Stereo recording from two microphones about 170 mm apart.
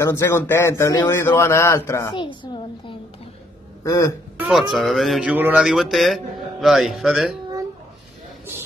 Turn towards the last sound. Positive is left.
turn(degrees=0)  # may be behind; listen again after turning